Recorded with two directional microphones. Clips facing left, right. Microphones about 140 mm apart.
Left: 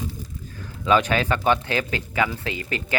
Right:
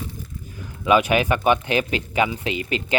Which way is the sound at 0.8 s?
15° right (ahead or behind).